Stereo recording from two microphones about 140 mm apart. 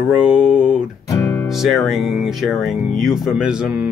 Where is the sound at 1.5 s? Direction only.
Centre (ahead or behind).